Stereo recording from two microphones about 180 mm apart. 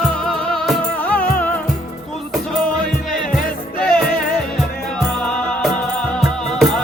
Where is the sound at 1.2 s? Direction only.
50° left (ahead or behind).